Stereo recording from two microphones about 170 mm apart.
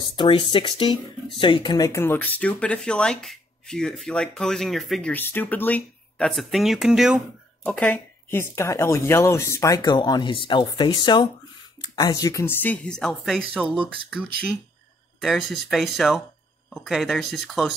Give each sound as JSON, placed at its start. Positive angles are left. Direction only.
{"t": 0.1, "sound": "speech", "side_deg": 30}
{"t": 15.1, "sound": "speech", "side_deg": 0}